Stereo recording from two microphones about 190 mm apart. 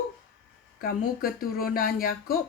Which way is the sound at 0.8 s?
50° left (ahead or behind).